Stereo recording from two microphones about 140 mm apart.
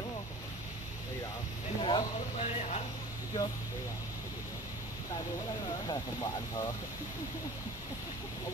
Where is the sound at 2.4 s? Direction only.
50° left (ahead or behind).